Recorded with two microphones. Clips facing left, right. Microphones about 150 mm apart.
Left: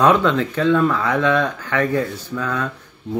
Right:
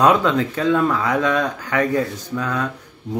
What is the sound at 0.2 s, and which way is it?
Speech, 10° right (ahead or behind).